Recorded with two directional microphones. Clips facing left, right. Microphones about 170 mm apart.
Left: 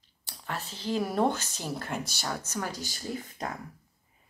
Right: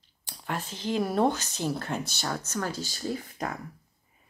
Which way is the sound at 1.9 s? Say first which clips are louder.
Right 2 dB; 10° left (ahead or behind).